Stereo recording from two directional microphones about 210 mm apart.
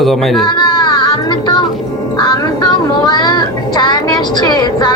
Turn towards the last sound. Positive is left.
turn(degrees=20)  # may be behind; listen again after turning